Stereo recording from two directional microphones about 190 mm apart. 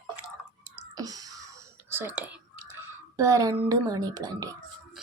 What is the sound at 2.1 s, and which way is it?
Speech, 10° right (ahead or behind).